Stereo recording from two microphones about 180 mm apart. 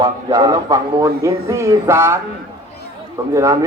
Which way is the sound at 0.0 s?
20° right (ahead or behind).